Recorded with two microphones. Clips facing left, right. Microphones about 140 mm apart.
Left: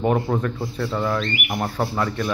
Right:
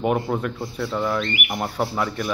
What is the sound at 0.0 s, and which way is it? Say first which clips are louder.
Speech: left 1 dB; 10° right (ahead or behind).